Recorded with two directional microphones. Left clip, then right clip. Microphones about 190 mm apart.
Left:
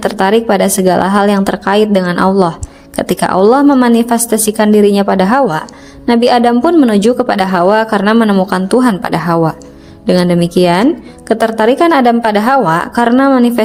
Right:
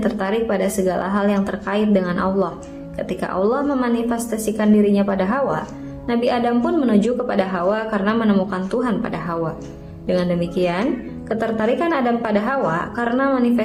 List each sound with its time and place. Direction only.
0.0 s a woman's voice: 55° left (ahead or behind)